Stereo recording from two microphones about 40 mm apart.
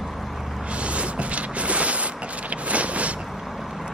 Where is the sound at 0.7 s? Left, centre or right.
Right.